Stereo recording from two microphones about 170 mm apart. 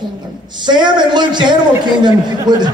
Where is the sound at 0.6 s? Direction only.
25° right (ahead or behind).